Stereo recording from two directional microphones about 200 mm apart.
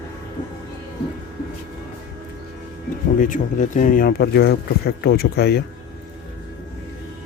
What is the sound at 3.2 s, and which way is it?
Speech, 40° left (ahead or behind).